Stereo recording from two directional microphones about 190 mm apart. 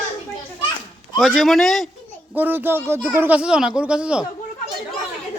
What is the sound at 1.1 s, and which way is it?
Speech, 5° right (ahead or behind).